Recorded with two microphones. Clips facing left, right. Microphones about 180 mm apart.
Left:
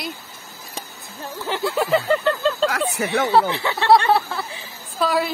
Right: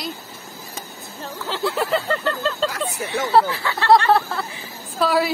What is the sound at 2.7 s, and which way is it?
Speech, 75° left (ahead or behind).